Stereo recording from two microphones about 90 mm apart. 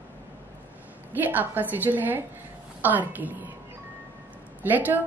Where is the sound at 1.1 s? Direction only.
20° right (ahead or behind).